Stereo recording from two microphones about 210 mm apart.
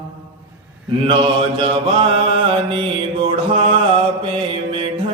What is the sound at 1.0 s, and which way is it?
Mantra, 25° right (ahead or behind).